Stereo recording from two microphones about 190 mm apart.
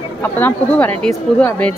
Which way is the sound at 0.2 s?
10° left (ahead or behind).